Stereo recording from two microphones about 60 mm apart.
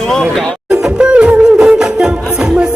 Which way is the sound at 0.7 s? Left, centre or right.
Centre.